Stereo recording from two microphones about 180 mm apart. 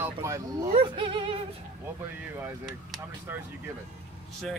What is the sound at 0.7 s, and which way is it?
Music, 30° right (ahead or behind).